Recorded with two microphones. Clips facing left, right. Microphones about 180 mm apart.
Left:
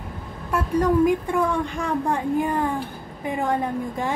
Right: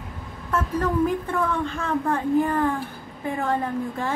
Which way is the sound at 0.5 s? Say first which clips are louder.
Left 4 dB; 15° left (ahead or behind).